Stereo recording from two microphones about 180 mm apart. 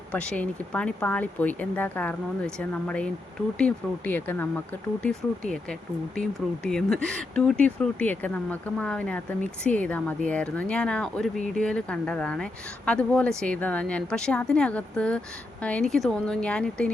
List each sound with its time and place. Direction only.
0.1 s speech: 5° left (ahead or behind)
11.3 s speech: 45° right (ahead or behind)
11.6 s speech: 5° left (ahead or behind)